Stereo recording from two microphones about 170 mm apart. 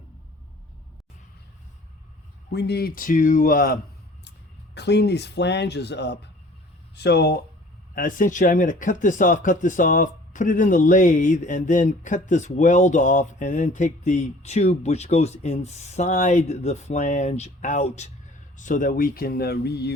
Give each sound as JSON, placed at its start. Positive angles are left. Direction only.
{"t": 2.5, "sound": "speech", "side_deg": 80}
{"t": 4.7, "sound": "speech", "side_deg": 80}
{"t": 7.9, "sound": "speech", "side_deg": 50}